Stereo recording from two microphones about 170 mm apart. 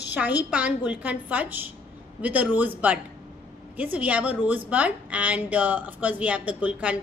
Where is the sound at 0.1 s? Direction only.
10° right (ahead or behind).